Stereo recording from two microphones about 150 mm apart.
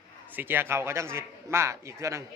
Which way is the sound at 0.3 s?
15° right (ahead or behind).